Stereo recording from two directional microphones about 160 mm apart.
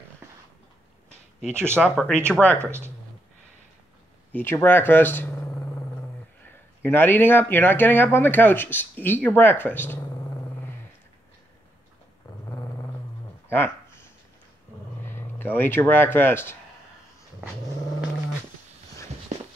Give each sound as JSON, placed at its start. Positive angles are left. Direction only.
{"t": 1.8, "sound": "speech", "side_deg": 5}
{"t": 2.5, "sound": "speech", "side_deg": -15}
{"t": 4.3, "sound": "purr", "side_deg": 10}
{"t": 6.4, "sound": "speech", "side_deg": 15}
{"t": 12.4, "sound": "dog", "side_deg": 15}
{"t": 13.5, "sound": "a sound", "side_deg": 15}
{"t": 15.0, "sound": "speech", "side_deg": 15}